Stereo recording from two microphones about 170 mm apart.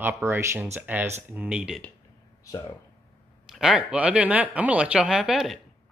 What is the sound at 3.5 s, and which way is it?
Speech, 5° right (ahead or behind).